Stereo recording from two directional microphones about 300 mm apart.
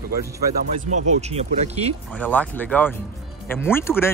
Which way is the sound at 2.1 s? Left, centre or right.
Centre.